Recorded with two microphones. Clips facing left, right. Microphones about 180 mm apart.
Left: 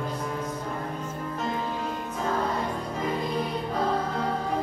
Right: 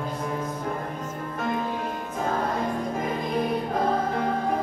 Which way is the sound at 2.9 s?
50° right (ahead or behind).